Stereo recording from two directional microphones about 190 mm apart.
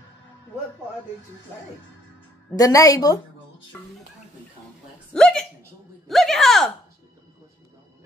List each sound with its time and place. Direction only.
2.5 s a woman's voice: 20° left (ahead or behind)
3.7 s speech: 10° left (ahead or behind)
5.1 s speech: 5° left (ahead or behind)